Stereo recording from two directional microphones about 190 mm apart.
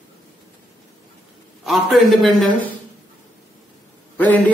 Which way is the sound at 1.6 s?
Centre (ahead or behind).